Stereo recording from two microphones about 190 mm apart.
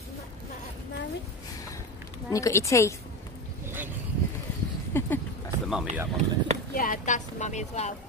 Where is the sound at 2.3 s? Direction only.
15° left (ahead or behind).